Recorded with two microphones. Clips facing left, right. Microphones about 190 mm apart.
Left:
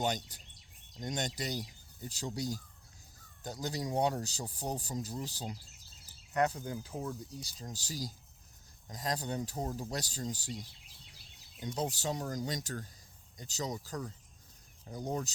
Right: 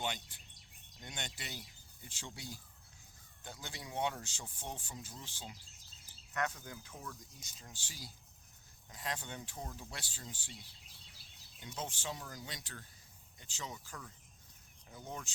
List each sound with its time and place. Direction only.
0.0 s speech: 40° left (ahead or behind)